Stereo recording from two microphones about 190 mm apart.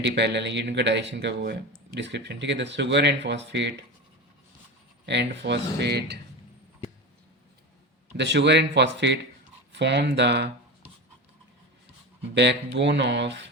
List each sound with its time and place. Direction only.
0.0 s speech: 65° right (ahead or behind)
5.0 s speech: 65° right (ahead or behind)
8.1 s speech: 65° right (ahead or behind)
12.3 s speech: 65° right (ahead or behind)